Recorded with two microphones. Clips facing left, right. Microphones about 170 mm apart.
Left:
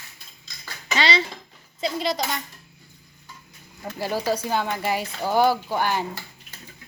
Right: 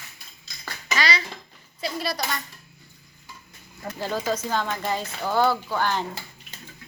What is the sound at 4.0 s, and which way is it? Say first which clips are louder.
Speech: left 2 dB; 10° left (ahead or behind).